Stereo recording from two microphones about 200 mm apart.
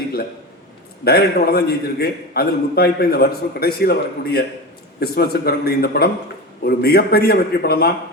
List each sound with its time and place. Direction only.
1.0 s a man's voice: 50° left (ahead or behind)